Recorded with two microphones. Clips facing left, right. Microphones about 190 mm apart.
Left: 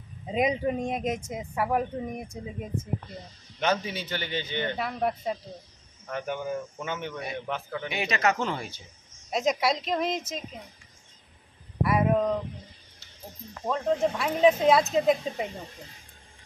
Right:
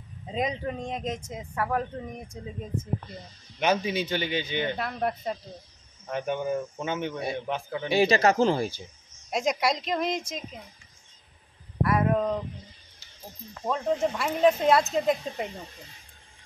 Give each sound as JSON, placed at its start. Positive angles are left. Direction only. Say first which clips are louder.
{"t": 0.3, "sound": "speech", "louder": "left 4 dB", "side_deg": 10}
{"t": 3.5, "sound": "speech", "louder": "right 3 dB", "side_deg": -15}
{"t": 4.7, "sound": "speech", "louder": "left 1 dB", "side_deg": 5}
{"t": 6.0, "sound": "speech", "louder": "right 3 dB", "side_deg": -20}
{"t": 7.9, "sound": "speech", "louder": "right 6 dB", "side_deg": -30}
{"t": 9.3, "sound": "speech", "louder": "left 1 dB", "side_deg": 0}
{"t": 11.8, "sound": "speech", "louder": "left 1 dB", "side_deg": 5}
{"t": 13.7, "sound": "speech", "louder": "left 1 dB", "side_deg": 0}